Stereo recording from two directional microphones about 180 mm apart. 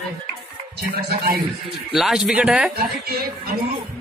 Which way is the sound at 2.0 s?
Centre (ahead or behind).